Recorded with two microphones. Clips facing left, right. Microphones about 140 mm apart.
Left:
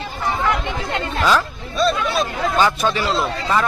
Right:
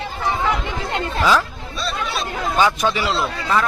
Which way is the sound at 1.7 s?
50° left (ahead or behind).